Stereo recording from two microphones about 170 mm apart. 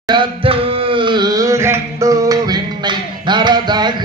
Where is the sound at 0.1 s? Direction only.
30° right (ahead or behind).